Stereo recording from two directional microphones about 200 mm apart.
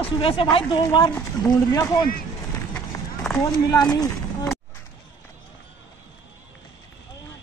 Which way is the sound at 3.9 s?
20° left (ahead or behind).